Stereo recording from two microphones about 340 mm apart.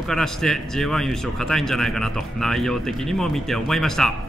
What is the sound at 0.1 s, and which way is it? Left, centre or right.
A man's voice, centre.